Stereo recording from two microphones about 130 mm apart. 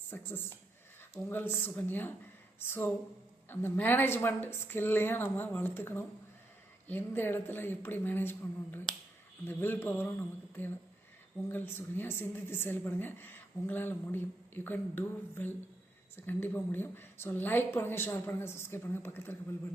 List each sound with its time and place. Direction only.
0.1 s a woman's voice: 15° left (ahead or behind)
11.4 s a woman's voice: 15° left (ahead or behind)